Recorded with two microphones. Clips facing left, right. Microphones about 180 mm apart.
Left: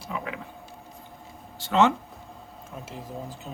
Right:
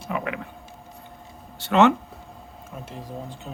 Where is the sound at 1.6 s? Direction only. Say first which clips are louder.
Right 4 dB; 65° right (ahead or behind).